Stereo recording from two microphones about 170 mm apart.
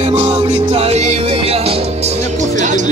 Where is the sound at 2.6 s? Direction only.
45° right (ahead or behind).